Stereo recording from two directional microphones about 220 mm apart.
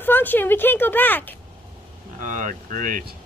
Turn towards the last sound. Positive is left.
turn(degrees=-40)  # may be behind; listen again after turning